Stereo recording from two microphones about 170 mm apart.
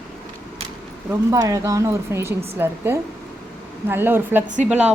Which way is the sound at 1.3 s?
20° right (ahead or behind).